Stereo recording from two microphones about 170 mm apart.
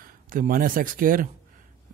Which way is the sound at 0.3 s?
55° right (ahead or behind).